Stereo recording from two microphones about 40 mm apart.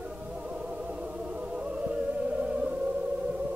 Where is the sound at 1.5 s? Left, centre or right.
Right.